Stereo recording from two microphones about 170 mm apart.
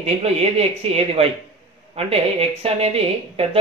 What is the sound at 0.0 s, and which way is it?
Speech, 35° right (ahead or behind).